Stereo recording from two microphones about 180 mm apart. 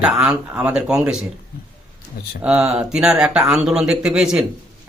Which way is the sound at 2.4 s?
5° right (ahead or behind).